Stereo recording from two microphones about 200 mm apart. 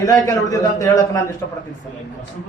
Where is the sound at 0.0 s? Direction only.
15° left (ahead or behind).